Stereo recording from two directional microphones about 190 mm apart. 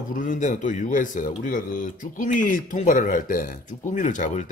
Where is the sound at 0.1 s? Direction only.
45° left (ahead or behind).